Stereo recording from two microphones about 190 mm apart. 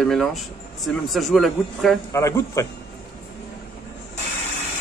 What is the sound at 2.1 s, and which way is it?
Speech, 15° left (ahead or behind).